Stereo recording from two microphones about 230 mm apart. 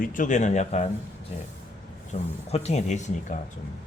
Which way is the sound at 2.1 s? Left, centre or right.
Left.